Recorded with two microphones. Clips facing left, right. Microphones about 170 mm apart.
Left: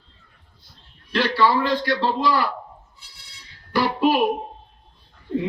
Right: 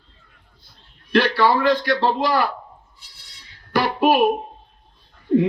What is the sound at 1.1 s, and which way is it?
A man's voice, 55° right (ahead or behind).